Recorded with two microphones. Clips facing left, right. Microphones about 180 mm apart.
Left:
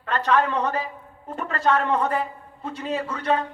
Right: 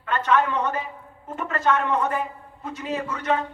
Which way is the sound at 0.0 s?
35° left (ahead or behind).